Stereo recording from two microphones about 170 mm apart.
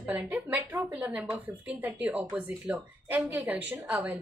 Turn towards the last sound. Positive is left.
turn(degrees=-10)  # may be behind; listen again after turning